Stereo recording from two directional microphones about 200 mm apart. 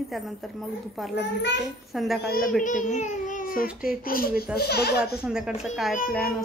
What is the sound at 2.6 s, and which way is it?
A child's voice, 40° left (ahead or behind).